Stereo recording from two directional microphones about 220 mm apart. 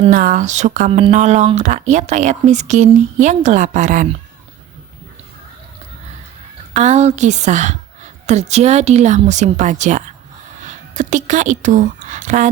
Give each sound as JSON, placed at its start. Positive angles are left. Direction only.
{"t": 0.0, "sound": "a woman's voice", "side_deg": -35}
{"t": 6.7, "sound": "a woman's voice", "side_deg": -30}